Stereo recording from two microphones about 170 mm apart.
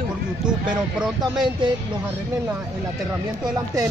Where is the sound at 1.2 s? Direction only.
25° right (ahead or behind).